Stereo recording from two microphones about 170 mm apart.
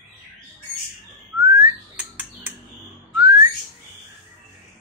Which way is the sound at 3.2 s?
20° right (ahead or behind).